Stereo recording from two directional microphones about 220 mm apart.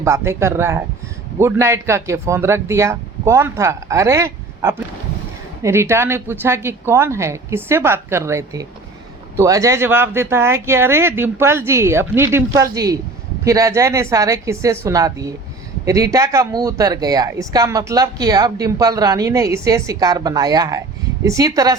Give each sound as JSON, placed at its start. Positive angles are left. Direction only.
{"t": 0.0, "sound": "speech", "side_deg": -10}